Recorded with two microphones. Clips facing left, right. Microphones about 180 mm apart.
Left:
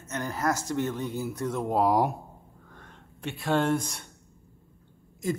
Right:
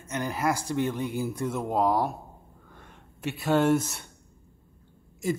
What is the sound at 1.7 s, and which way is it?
Speech, 10° left (ahead or behind).